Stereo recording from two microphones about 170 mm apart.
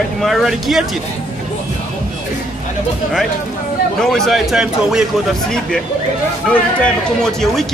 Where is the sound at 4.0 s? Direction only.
5° left (ahead or behind).